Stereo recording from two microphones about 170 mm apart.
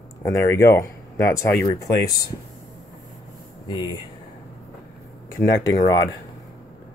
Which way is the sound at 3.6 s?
25° left (ahead or behind).